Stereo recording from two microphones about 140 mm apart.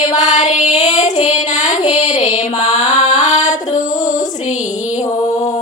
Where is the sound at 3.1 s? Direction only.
60° left (ahead or behind).